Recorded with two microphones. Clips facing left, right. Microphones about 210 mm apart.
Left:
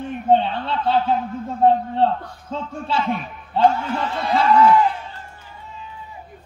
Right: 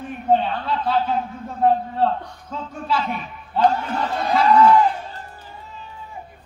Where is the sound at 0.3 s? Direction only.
25° left (ahead or behind).